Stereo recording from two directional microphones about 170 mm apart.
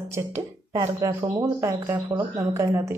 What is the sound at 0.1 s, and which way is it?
Speech, 15° right (ahead or behind).